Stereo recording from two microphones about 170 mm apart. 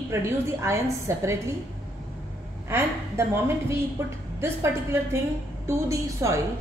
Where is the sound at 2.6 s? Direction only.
15° right (ahead or behind).